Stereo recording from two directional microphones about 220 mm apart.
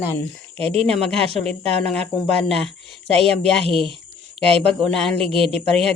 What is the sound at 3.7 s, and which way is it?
Speech, centre (ahead or behind).